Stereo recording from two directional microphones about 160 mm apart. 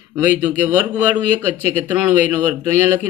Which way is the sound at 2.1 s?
50° left (ahead or behind).